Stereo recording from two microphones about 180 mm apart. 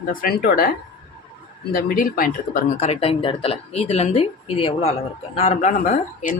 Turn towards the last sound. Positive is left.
turn(degrees=45)  # may be behind; listen again after turning